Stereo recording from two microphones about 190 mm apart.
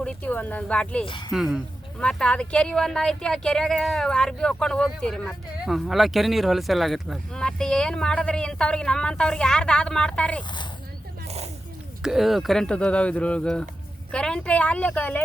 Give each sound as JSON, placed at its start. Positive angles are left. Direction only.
{"t": 0.0, "sound": "speech", "side_deg": 5}
{"t": 1.0, "sound": "speech", "side_deg": 25}
{"t": 1.3, "sound": "a woman's voice", "side_deg": 0}
{"t": 12.0, "sound": "a woman's voice", "side_deg": 0}